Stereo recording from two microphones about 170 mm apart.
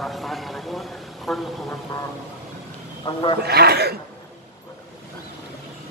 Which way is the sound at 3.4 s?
70° right (ahead or behind).